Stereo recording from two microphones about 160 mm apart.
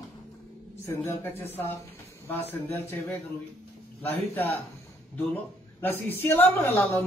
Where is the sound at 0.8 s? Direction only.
15° left (ahead or behind).